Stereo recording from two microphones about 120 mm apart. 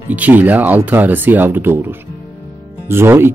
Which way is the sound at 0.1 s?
15° right (ahead or behind).